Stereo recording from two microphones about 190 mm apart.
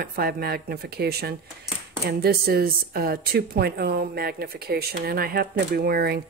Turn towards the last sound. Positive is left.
turn(degrees=-55)  # may be behind; listen again after turning